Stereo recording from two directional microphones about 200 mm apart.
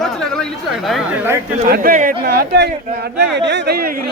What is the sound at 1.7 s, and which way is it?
Speech, 45° right (ahead or behind).